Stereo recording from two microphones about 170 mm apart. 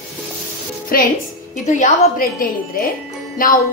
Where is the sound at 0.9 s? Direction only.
55° left (ahead or behind).